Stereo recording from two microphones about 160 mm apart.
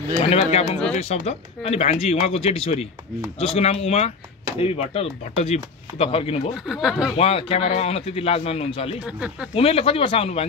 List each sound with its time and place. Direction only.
0.2 s speech: 35° left (ahead or behind)
6.6 s speech: centre (ahead or behind)
7.2 s speech: 40° left (ahead or behind)
9.0 s speech: 5° right (ahead or behind)
9.5 s speech: 35° left (ahead or behind)